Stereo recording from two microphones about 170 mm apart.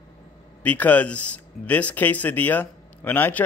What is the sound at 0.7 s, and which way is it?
A man's voice, 10° left (ahead or behind).